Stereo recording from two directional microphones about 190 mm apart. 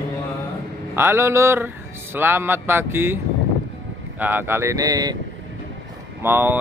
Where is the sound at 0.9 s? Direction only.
15° right (ahead or behind).